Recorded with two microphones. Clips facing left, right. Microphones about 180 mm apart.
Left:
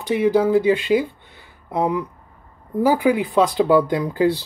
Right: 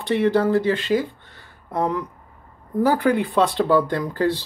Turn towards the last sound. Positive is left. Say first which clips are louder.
# left 3 dB
turn(degrees=15)  # may be behind; listen again after turning